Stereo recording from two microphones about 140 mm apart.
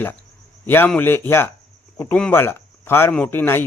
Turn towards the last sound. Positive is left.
turn(degrees=15)  # may be behind; listen again after turning